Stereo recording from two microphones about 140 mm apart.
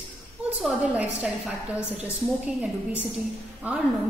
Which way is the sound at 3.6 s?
10° right (ahead or behind).